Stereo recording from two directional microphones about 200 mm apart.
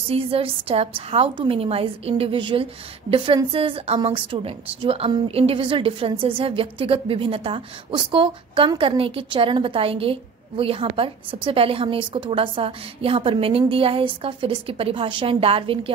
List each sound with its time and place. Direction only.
0.1 s a woman's voice: 30° right (ahead or behind)